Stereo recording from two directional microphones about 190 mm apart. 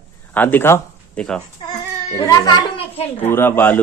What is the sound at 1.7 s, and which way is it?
Crying, 20° left (ahead or behind).